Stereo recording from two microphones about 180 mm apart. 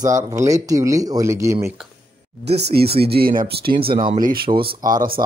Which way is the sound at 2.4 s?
65° right (ahead or behind).